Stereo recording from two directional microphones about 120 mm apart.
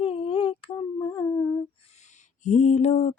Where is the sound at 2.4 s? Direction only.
75° left (ahead or behind).